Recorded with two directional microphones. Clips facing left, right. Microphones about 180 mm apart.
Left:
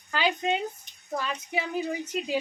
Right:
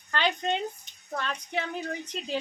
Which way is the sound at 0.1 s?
5° left (ahead or behind).